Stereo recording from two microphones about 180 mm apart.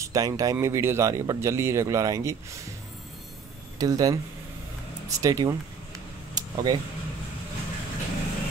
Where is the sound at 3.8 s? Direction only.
20° right (ahead or behind).